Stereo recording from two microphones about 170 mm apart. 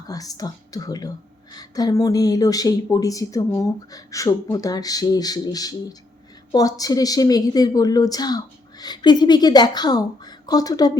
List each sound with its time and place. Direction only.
0.1 s a woman's voice: 20° left (ahead or behind)